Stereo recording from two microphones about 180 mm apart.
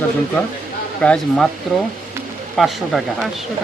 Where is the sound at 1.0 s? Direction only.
5° left (ahead or behind).